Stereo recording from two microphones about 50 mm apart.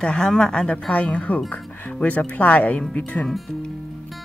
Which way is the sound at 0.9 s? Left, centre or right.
Left.